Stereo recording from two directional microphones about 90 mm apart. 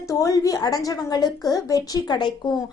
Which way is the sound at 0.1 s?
40° left (ahead or behind).